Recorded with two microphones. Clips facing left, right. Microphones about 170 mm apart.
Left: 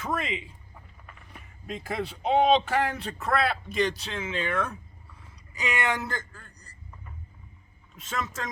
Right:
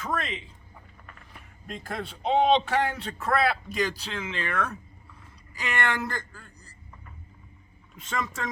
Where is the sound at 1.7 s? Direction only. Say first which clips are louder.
Left 3 dB; centre (ahead or behind).